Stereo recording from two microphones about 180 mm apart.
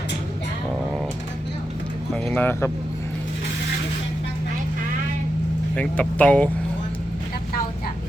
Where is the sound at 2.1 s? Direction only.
5° left (ahead or behind).